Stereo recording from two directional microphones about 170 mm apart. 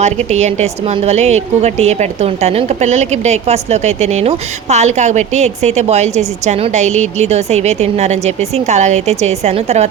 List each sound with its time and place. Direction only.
0.0 s a woman's voice: 40° right (ahead or behind)